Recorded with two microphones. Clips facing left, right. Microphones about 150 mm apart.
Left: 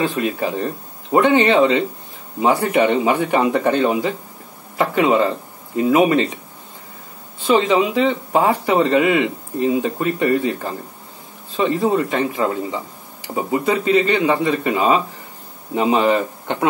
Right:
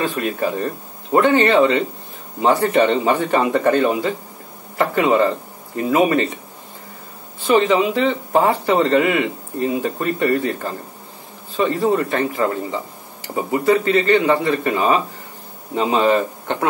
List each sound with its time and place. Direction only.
0.0 s speech: 15° left (ahead or behind)
7.5 s speech: 15° left (ahead or behind)